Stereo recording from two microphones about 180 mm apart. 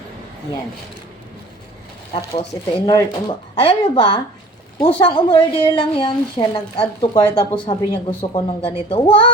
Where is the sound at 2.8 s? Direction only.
25° left (ahead or behind).